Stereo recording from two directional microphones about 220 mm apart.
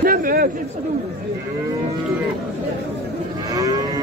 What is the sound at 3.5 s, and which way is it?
Livestock, 15° right (ahead or behind).